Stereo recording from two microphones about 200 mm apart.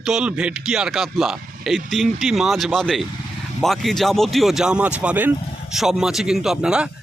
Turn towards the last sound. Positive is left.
turn(degrees=-5)  # may be behind; listen again after turning